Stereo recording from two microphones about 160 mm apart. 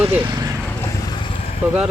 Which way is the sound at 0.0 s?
10° right (ahead or behind).